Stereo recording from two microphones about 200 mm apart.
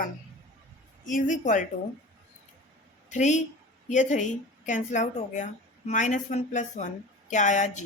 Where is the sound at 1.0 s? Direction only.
40° left (ahead or behind).